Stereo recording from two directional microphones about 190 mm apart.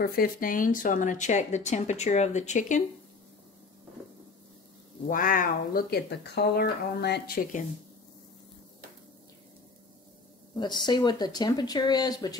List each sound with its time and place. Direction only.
0.0 s speech: 50° left (ahead or behind)
5.0 s speech: 45° left (ahead or behind)
10.5 s speech: 25° left (ahead or behind)